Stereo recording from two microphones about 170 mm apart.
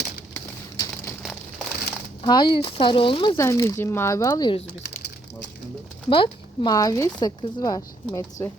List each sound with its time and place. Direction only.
0.3 s a sound: 15° left (ahead or behind)
2.2 s speech: 25° left (ahead or behind)
3.3 s speech: 15° left (ahead or behind)
6.1 s speech: 30° left (ahead or behind)
6.7 s speech: 20° left (ahead or behind)